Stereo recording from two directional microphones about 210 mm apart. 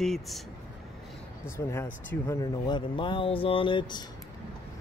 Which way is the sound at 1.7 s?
10° left (ahead or behind).